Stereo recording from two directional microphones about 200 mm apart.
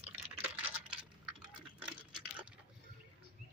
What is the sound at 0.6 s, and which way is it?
Computer keyboard, 5° right (ahead or behind).